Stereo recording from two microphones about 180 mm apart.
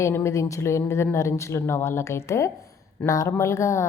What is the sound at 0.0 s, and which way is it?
Speech, 15° left (ahead or behind).